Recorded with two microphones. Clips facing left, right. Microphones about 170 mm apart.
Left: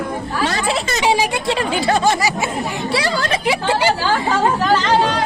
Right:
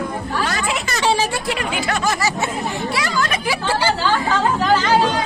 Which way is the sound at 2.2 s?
15° left (ahead or behind).